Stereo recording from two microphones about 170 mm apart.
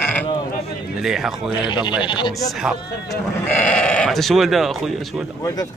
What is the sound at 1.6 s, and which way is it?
Speech, 25° left (ahead or behind).